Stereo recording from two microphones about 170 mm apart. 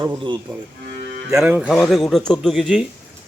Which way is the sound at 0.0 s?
20° right (ahead or behind).